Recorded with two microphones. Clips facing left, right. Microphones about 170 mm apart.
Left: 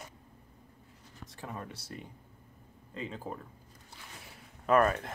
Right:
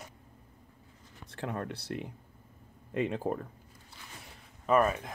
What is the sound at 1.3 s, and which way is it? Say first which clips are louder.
Speech: right 6 dB; 70° right (ahead or behind).